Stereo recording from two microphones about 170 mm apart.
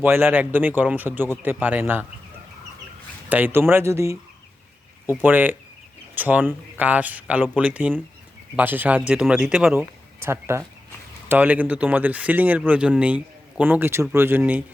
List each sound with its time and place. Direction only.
0.0 s speech: 10° right (ahead or behind)
3.2 s speech: 10° right (ahead or behind)